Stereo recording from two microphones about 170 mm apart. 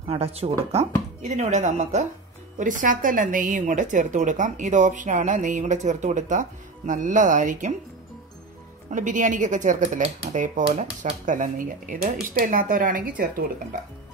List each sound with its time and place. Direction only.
0.0 s a woman's voice: 35° right (ahead or behind)
8.9 s a woman's voice: 50° right (ahead or behind)